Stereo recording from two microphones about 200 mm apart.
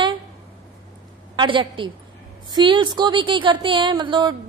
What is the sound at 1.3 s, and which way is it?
A woman's voice, 25° right (ahead or behind).